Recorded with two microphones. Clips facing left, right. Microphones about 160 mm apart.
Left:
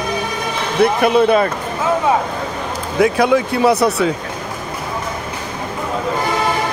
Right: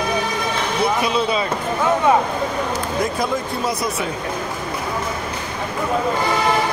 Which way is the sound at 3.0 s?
75° left (ahead or behind).